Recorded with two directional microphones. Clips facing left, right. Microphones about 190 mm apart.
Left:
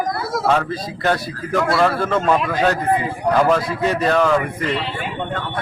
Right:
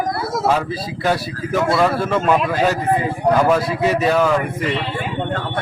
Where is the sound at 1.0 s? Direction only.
5° right (ahead or behind).